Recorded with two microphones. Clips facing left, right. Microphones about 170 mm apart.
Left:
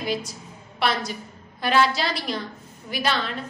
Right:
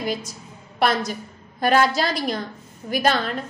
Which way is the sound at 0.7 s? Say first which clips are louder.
Right 4 dB; 45° right (ahead or behind).